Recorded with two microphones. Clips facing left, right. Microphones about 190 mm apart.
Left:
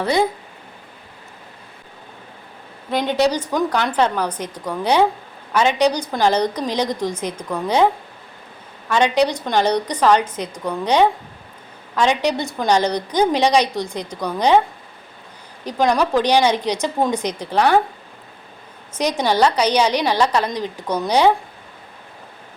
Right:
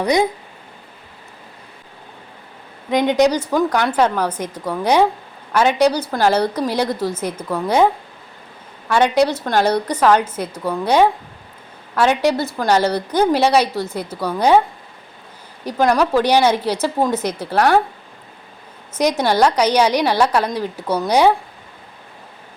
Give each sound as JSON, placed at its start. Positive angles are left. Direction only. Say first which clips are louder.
{"t": 0.0, "sound": "a woman's voice", "louder": "right 2 dB", "side_deg": -15}
{"t": 2.9, "sound": "a woman's voice", "louder": "right 3 dB", "side_deg": -15}
{"t": 8.9, "sound": "a woman's voice", "louder": "right 2 dB", "side_deg": -10}
{"t": 15.6, "sound": "a woman's voice", "louder": "right 2 dB", "side_deg": -5}
{"t": 18.9, "sound": "a woman's voice", "louder": "right 2 dB", "side_deg": -10}